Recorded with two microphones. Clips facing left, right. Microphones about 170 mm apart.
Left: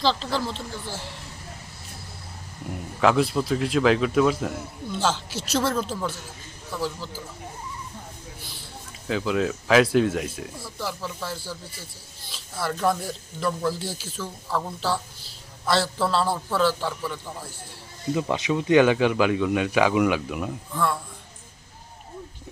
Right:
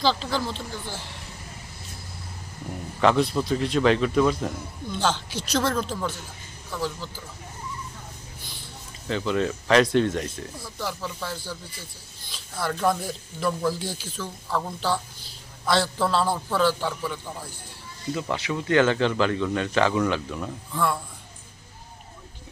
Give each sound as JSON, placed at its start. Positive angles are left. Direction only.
{"t": 0.0, "sound": "a man's voice", "side_deg": 0}
{"t": 3.0, "sound": "a man's voice", "side_deg": 5}
{"t": 9.0, "sound": "a man's voice", "side_deg": 5}
{"t": 18.1, "sound": "speech", "side_deg": 20}
{"t": 20.7, "sound": "a man's voice", "side_deg": 0}